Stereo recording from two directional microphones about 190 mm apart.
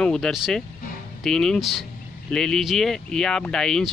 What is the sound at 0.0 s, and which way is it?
Speech, 5° left (ahead or behind).